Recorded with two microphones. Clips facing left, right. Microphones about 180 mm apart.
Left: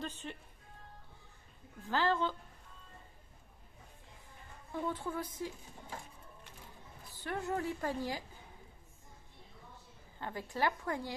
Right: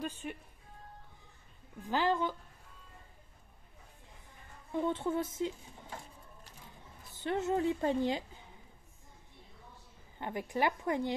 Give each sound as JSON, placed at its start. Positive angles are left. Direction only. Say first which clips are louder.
{"t": 0.0, "sound": "speech", "louder": "right 3 dB", "side_deg": -10}
{"t": 1.8, "sound": "a woman's voice", "louder": "right 1 dB", "side_deg": -15}
{"t": 4.7, "sound": "a woman's voice", "louder": "right 5 dB", "side_deg": -25}
{"t": 7.2, "sound": "a woman's voice", "louder": "right 5 dB", "side_deg": -20}
{"t": 10.1, "sound": "a woman's voice", "louder": "right 5 dB", "side_deg": -20}